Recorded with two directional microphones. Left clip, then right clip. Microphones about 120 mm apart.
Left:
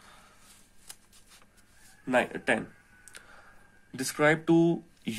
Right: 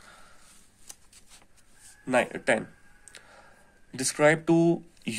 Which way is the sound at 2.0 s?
30° right (ahead or behind).